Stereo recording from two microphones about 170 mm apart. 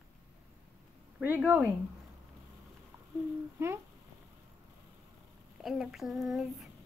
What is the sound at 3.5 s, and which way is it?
Speech, 15° right (ahead or behind).